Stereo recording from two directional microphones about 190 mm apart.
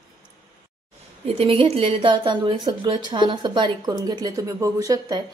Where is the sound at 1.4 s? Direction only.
30° right (ahead or behind).